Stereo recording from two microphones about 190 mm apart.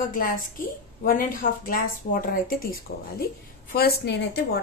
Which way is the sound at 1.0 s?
50° left (ahead or behind).